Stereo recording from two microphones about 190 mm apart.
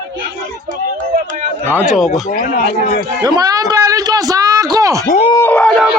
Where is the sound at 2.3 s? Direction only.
45° left (ahead or behind).